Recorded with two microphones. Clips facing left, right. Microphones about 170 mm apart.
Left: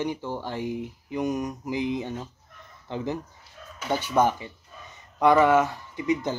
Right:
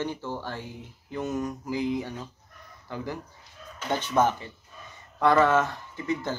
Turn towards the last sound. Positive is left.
turn(degrees=15)  # may be behind; listen again after turning